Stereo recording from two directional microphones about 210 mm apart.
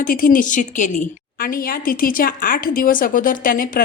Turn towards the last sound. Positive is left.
turn(degrees=40)  # may be behind; listen again after turning